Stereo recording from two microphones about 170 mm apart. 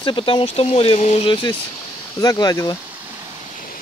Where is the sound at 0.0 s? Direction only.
30° left (ahead or behind).